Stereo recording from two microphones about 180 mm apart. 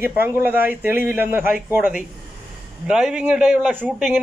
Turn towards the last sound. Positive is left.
turn(degrees=-5)  # may be behind; listen again after turning